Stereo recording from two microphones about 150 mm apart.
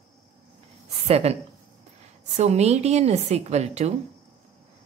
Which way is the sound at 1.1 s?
45° right (ahead or behind).